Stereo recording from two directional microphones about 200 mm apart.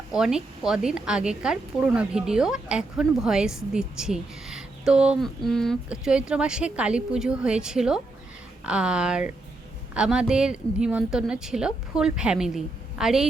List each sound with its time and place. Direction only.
0.1 s a woman's voice: 5° right (ahead or behind)